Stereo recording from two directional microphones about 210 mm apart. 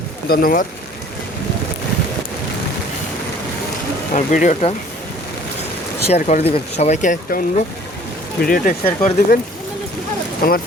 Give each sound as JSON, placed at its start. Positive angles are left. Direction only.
{"t": 0.3, "sound": "speech", "side_deg": 40}
{"t": 4.1, "sound": "speech", "side_deg": 40}
{"t": 6.1, "sound": "speech", "side_deg": 30}
{"t": 10.4, "sound": "speech", "side_deg": 45}